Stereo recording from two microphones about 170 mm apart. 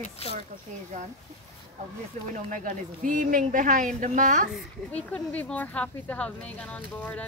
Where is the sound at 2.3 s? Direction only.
50° right (ahead or behind).